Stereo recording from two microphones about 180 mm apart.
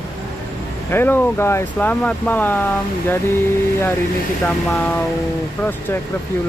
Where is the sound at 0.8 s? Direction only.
10° left (ahead or behind).